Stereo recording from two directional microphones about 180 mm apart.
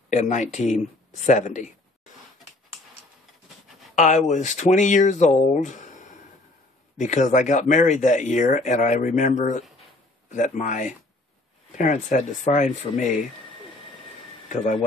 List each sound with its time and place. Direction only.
0.1 s speech: 40° left (ahead or behind)
3.9 s speech: 40° left (ahead or behind)
14.5 s speech: 45° left (ahead or behind)